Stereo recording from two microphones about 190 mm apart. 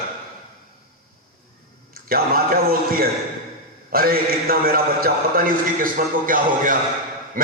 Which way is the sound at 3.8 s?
50° right (ahead or behind).